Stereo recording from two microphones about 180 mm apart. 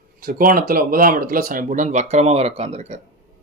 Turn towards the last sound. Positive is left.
turn(degrees=-40)  # may be behind; listen again after turning